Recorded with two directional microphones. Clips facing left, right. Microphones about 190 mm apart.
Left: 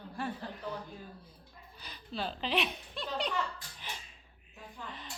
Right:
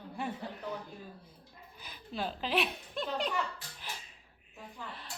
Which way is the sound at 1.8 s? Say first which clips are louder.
Right 1 dB; 10° right (ahead or behind).